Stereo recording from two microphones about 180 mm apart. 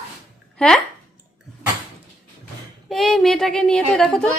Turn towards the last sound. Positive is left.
turn(degrees=5)  # may be behind; listen again after turning